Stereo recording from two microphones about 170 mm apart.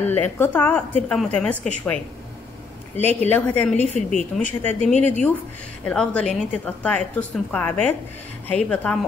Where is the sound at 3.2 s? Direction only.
10° left (ahead or behind).